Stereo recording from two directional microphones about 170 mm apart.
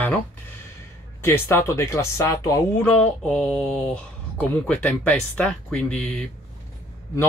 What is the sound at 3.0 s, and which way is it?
Speech, 5° left (ahead or behind).